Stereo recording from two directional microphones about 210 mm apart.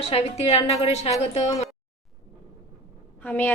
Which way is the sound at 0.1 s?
30° left (ahead or behind).